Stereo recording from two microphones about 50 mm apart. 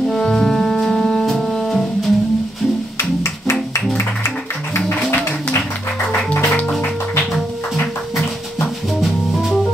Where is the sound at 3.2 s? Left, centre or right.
Left.